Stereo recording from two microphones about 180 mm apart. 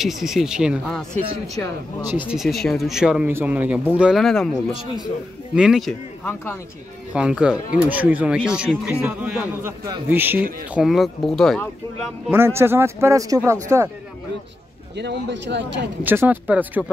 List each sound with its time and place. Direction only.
0.0 s speech: centre (ahead or behind)
1.6 s speech: 20° left (ahead or behind)
2.1 s speech: 5° right (ahead or behind)
5.5 s speech: 5° right (ahead or behind)
7.2 s speech: 5° right (ahead or behind)
9.7 s a man's voice: 20° right (ahead or behind)
10.0 s speech: 10° right (ahead or behind)
12.3 s speech: 15° right (ahead or behind)
15.0 s speech: 75° right (ahead or behind)
16.0 s speech: 10° right (ahead or behind)